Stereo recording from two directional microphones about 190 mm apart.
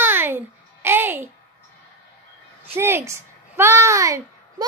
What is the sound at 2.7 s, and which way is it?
A child's voice, 15° right (ahead or behind).